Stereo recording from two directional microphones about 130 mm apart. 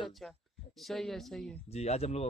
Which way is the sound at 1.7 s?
55° left (ahead or behind).